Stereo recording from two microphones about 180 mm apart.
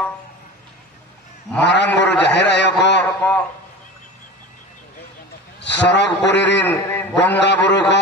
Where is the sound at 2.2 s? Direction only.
70° left (ahead or behind).